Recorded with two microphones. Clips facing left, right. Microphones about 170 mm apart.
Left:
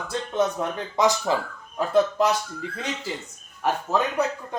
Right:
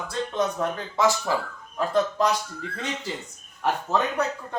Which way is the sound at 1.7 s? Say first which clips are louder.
Left 3 dB; 10° left (ahead or behind).